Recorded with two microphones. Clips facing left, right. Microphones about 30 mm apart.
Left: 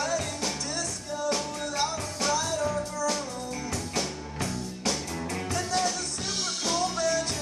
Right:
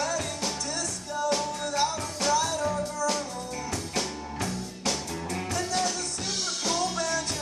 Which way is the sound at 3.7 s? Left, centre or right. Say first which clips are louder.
Right 1 dB; centre.